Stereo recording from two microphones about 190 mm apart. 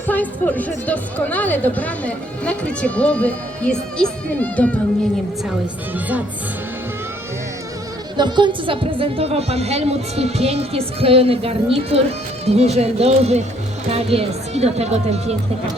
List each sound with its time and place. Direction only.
0.1 s a woman's voice: 10° left (ahead or behind)
8.1 s speech: 25° right (ahead or behind)